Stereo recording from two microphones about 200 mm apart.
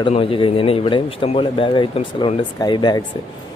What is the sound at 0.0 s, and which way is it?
Speech, 25° left (ahead or behind).